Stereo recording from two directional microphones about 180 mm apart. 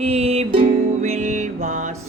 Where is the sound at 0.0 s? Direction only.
35° right (ahead or behind).